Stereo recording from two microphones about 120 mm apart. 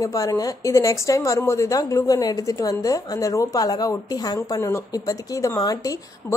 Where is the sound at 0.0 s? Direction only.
30° left (ahead or behind).